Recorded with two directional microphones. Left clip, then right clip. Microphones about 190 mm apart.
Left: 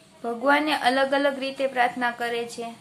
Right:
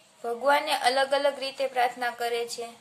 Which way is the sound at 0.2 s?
20° right (ahead or behind).